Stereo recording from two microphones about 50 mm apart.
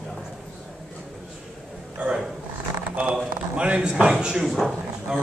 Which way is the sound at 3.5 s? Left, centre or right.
Right.